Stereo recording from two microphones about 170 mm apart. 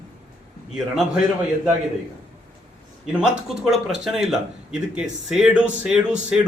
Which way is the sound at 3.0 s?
5° right (ahead or behind).